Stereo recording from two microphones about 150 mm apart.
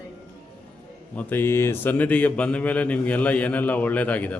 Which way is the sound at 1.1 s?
15° left (ahead or behind).